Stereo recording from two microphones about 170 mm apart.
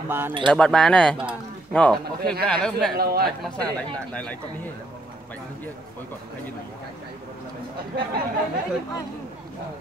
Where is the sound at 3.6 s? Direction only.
20° right (ahead or behind).